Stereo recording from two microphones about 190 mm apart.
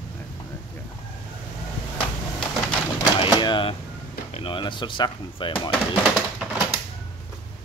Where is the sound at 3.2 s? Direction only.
25° left (ahead or behind).